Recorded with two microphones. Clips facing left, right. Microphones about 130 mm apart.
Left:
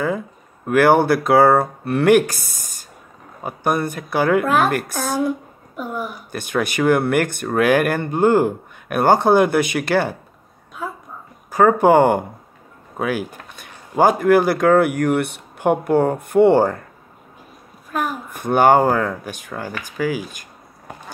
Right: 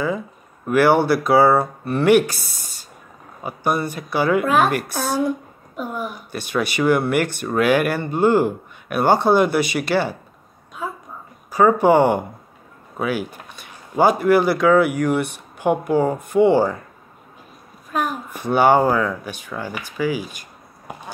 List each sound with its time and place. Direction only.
0.7 s speech: 50° left (ahead or behind)
4.9 s a woman's voice: 15° left (ahead or behind)
5.8 s a woman's voice: 20° right (ahead or behind)
6.3 s speech: 50° left (ahead or behind)
11.5 s speech: 50° left (ahead or behind)
18.3 s speech: 50° left (ahead or behind)